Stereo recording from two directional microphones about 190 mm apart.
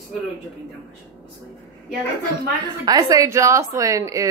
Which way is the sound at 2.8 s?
20° right (ahead or behind).